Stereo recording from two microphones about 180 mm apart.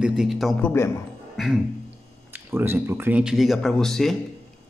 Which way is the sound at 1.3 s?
Centre (ahead or behind).